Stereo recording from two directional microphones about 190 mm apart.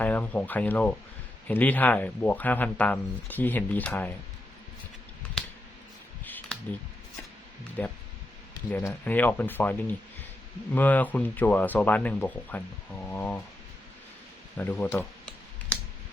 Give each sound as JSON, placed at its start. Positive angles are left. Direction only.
{"t": 0.0, "sound": "speech", "side_deg": 5}
{"t": 6.2, "sound": "a sound", "side_deg": 10}
{"t": 7.8, "sound": "speech", "side_deg": 5}
{"t": 14.6, "sound": "speech", "side_deg": 10}